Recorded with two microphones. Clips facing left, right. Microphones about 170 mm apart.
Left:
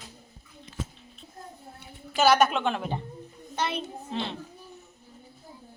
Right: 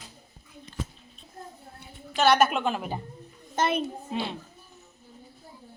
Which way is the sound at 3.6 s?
50° right (ahead or behind).